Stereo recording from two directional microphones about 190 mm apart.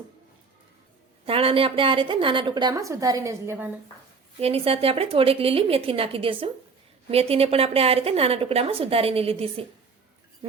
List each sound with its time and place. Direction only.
1.2 s a woman's voice: 30° right (ahead or behind); by 3.7 s 10° right (ahead or behind)
4.4 s a woman's voice: 30° right (ahead or behind)